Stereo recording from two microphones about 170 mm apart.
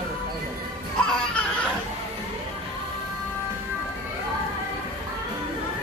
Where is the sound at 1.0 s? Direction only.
5° left (ahead or behind).